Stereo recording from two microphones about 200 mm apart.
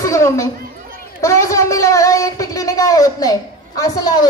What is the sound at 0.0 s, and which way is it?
Children playing, 15° left (ahead or behind).